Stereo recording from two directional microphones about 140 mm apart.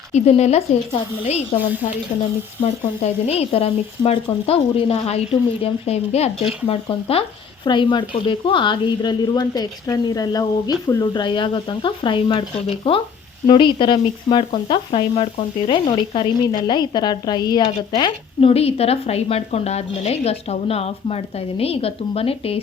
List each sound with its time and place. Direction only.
0.1 s speech: 50° left (ahead or behind)